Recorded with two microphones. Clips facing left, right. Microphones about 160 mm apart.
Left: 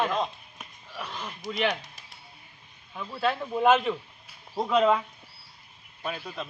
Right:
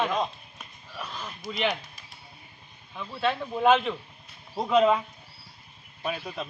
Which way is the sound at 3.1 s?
5° left (ahead or behind).